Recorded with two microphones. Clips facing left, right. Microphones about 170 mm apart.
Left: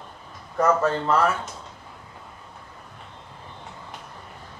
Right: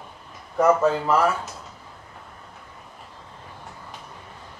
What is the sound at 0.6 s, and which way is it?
Speech, 5° right (ahead or behind).